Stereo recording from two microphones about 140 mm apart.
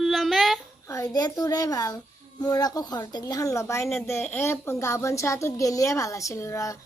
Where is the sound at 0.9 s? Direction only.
25° left (ahead or behind).